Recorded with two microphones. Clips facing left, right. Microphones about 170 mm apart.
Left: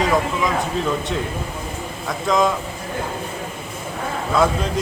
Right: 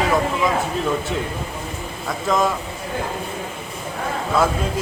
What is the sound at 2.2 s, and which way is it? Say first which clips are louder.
Speech: left 2 dB; 5° right (ahead or behind).